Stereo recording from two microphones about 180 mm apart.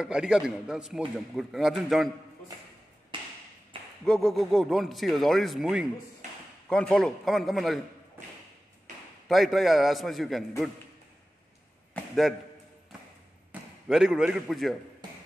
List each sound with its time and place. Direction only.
0.0 s a man's voice: 5° right (ahead or behind)
3.1 s a sound: 30° right (ahead or behind)
4.0 s a man's voice: 5° left (ahead or behind)
9.3 s a man's voice: centre (ahead or behind)
11.9 s a sound: centre (ahead or behind)
13.5 s speech: 5° right (ahead or behind)